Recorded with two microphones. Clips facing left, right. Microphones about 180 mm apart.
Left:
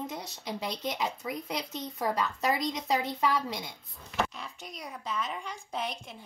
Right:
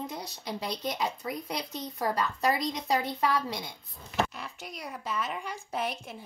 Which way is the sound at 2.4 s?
20° left (ahead or behind).